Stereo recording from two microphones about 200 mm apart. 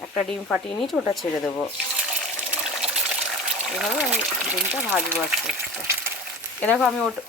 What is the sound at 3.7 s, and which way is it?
Speech, 5° right (ahead or behind).